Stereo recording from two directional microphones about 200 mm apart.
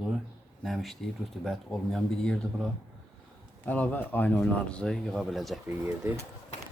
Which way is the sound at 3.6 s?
10° left (ahead or behind).